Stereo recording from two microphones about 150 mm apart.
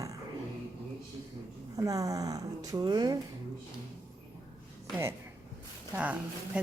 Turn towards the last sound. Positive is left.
turn(degrees=-10)  # may be behind; listen again after turning